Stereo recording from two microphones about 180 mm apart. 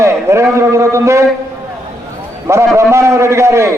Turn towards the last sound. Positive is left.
turn(degrees=-15)  # may be behind; listen again after turning